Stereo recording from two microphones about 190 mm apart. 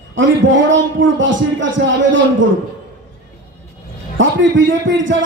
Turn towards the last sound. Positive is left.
turn(degrees=-80)